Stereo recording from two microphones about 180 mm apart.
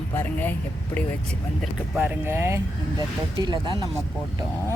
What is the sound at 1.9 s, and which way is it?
Speech, 10° right (ahead or behind).